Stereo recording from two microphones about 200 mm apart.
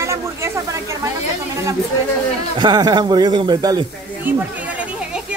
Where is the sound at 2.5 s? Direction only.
20° right (ahead or behind).